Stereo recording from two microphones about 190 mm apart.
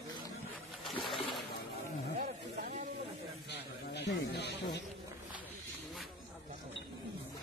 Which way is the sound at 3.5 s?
60° left (ahead or behind).